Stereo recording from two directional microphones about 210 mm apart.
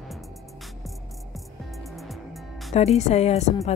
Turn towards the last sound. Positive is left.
turn(degrees=30)  # may be behind; listen again after turning